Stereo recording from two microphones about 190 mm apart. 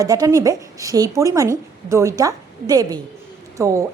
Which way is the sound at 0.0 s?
20° right (ahead or behind).